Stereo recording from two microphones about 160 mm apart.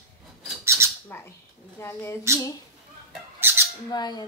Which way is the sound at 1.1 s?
15° left (ahead or behind).